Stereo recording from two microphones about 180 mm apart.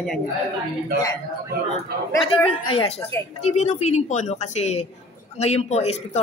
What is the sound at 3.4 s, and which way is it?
Speech, 40° left (ahead or behind).